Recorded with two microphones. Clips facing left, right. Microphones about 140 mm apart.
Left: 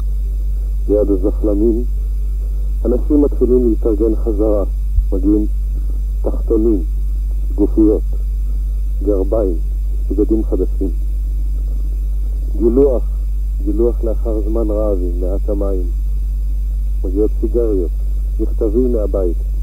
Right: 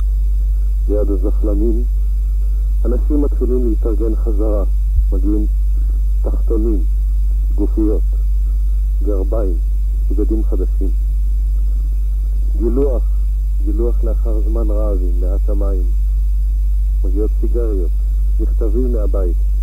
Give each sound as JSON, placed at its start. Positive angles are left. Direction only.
{"t": 0.8, "sound": "speech", "side_deg": 20}
{"t": 2.8, "sound": "speech", "side_deg": 25}
{"t": 9.0, "sound": "speech", "side_deg": 25}
{"t": 12.5, "sound": "speech", "side_deg": 25}
{"t": 17.0, "sound": "speech", "side_deg": 20}